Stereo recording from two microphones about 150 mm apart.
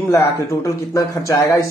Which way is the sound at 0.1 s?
20° left (ahead or behind).